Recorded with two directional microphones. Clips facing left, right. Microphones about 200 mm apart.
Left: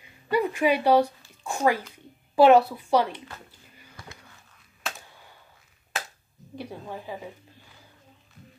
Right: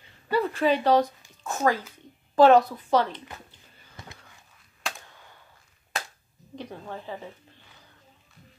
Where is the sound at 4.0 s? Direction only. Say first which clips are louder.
Even; 25° right (ahead or behind).